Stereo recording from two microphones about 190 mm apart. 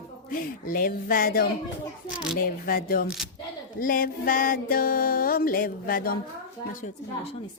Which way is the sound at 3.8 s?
45° left (ahead or behind).